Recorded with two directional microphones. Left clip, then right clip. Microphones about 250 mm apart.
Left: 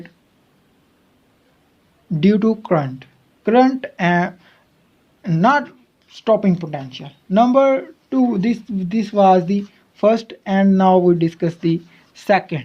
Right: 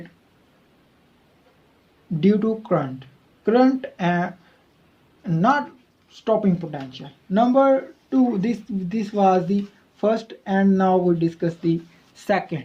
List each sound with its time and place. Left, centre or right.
2.2 s speech: left